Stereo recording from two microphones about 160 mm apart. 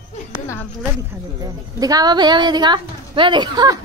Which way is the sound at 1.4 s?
25° right (ahead or behind).